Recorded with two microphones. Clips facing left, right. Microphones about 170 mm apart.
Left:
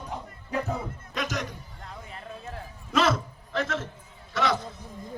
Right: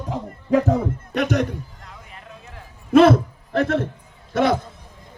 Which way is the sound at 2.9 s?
55° right (ahead or behind).